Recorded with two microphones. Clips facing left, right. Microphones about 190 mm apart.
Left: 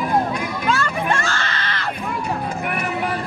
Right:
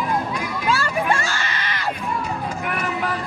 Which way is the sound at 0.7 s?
10° right (ahead or behind).